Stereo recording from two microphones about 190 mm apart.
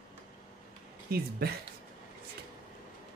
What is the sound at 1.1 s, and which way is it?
Speech, 55° right (ahead or behind).